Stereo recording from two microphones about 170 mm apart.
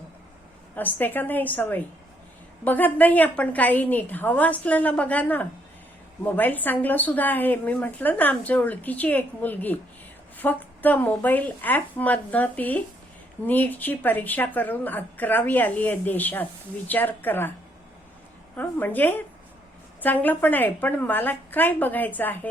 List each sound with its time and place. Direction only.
0.8 s a woman's voice: 10° left (ahead or behind)
18.5 s a woman's voice: 10° left (ahead or behind)